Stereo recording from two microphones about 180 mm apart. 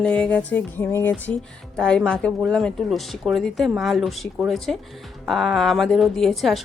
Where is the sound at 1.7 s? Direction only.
5° left (ahead or behind).